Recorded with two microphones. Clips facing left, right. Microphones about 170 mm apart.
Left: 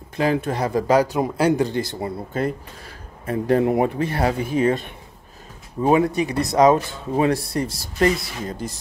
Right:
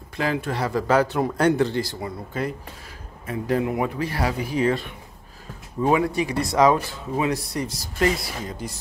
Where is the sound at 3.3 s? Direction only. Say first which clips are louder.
Left 5 dB; 45° left (ahead or behind); by 4.7 s 25° left (ahead or behind).